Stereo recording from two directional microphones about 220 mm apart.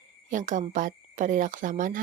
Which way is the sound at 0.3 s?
35° right (ahead or behind).